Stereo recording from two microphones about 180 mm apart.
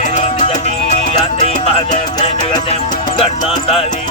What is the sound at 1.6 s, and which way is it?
Music, 35° left (ahead or behind).